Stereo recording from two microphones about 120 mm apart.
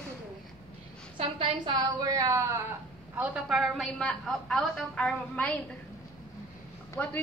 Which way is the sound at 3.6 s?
Centre (ahead or behind).